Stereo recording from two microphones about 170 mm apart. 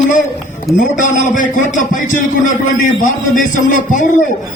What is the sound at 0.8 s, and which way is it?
A man's voice, 50° left (ahead or behind).